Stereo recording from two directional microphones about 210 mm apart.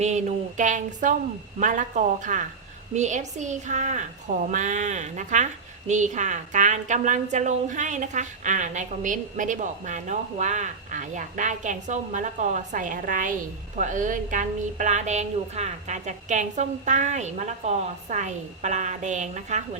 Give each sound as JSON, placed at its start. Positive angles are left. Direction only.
{"t": 0.0, "sound": "a woman's voice", "side_deg": -35}